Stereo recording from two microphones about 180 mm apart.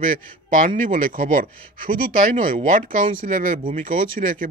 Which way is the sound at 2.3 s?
45° right (ahead or behind).